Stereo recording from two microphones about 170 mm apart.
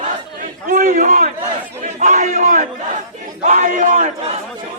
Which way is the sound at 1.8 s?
45° right (ahead or behind).